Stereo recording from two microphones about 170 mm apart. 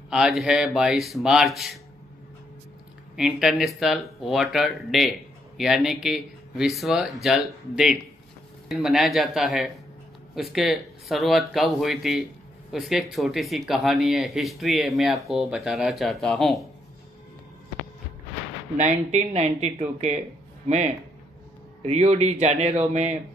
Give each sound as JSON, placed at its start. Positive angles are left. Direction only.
{"t": 0.1, "sound": "speech", "side_deg": 0}
{"t": 3.2, "sound": "speech", "side_deg": 0}
{"t": 18.8, "sound": "speech", "side_deg": -45}